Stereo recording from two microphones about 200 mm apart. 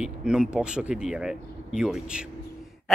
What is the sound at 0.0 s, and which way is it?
Speech, 5° right (ahead or behind).